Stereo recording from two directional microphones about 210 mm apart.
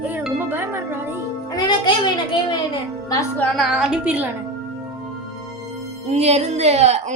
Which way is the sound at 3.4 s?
Centre (ahead or behind).